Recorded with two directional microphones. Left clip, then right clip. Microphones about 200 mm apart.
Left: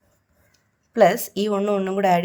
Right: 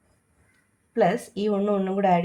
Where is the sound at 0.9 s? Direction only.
45° left (ahead or behind).